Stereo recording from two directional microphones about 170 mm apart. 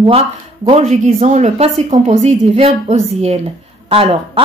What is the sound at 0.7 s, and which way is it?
Speech, 40° right (ahead or behind).